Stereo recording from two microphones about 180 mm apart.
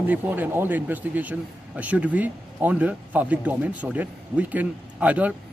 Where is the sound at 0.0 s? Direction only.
10° right (ahead or behind).